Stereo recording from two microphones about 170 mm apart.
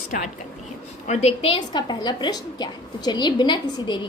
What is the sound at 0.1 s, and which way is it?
Speech, 55° left (ahead or behind).